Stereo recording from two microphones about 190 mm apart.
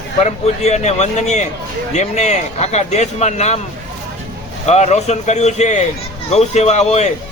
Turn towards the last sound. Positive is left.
turn(degrees=35)  # may be behind; listen again after turning